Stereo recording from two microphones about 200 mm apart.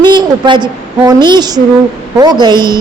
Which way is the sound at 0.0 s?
20° right (ahead or behind).